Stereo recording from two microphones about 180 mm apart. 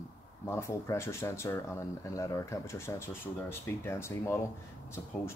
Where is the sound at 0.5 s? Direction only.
15° left (ahead or behind).